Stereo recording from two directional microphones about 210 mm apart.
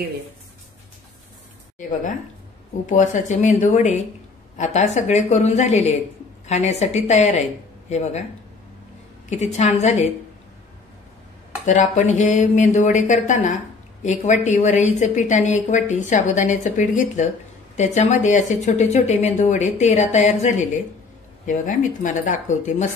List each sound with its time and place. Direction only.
1.8 s a woman's voice: 35° left (ahead or behind)
9.3 s a woman's voice: 30° left (ahead or behind)
11.6 s a woman's voice: 35° left (ahead or behind)